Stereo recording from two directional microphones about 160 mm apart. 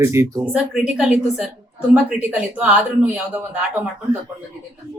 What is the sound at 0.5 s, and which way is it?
A woman's voice, 5° right (ahead or behind).